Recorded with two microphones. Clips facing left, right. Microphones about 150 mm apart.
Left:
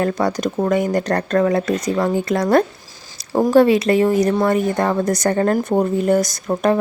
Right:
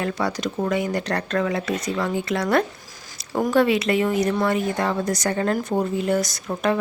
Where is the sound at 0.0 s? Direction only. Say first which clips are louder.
Left 6 dB; 45° left (ahead or behind).